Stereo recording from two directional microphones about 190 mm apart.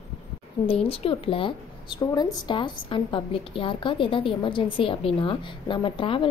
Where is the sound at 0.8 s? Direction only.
30° left (ahead or behind).